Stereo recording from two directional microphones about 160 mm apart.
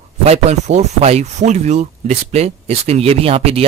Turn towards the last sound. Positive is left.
turn(degrees=-40)  # may be behind; listen again after turning